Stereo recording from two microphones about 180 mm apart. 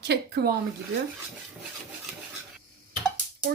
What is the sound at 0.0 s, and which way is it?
Speech, 65° right (ahead or behind).